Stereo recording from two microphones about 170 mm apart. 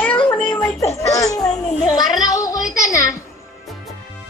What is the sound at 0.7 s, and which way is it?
A child's voice, 20° left (ahead or behind).